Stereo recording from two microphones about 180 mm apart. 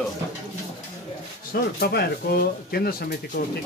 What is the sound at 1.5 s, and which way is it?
Speech, 55° left (ahead or behind).